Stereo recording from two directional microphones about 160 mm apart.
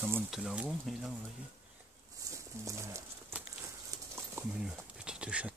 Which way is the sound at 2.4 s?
20° right (ahead or behind).